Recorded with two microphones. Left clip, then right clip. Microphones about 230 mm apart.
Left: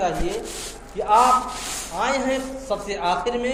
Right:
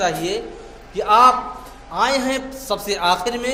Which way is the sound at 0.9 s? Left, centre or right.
Right.